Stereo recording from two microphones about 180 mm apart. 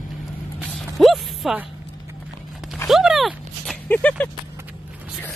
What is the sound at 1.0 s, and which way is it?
Speech, centre (ahead or behind).